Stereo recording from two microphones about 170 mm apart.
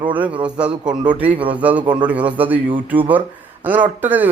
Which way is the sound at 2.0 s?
10° right (ahead or behind).